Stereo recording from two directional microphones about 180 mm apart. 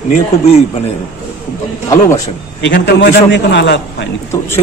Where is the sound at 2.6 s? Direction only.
75° left (ahead or behind).